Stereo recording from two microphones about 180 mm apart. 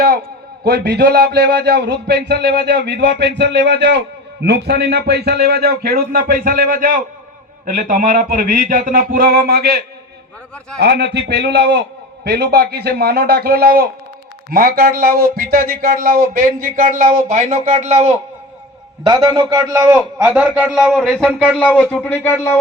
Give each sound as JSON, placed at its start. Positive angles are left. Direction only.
{"t": 0.6, "sound": "a man's voice", "side_deg": -65}
{"t": 19.0, "sound": "a man's voice", "side_deg": -25}
{"t": 20.0, "sound": "a man's voice", "side_deg": -5}